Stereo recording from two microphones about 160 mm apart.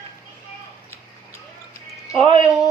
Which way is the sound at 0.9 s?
15° left (ahead or behind).